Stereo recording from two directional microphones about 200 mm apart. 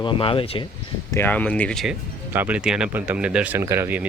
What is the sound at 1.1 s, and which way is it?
Speech, 10° left (ahead or behind).